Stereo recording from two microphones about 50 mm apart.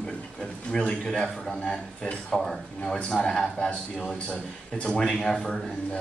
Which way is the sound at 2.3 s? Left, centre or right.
Centre.